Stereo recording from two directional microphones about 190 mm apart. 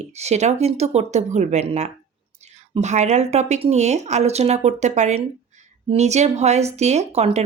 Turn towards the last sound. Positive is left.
turn(degrees=-35)  # may be behind; listen again after turning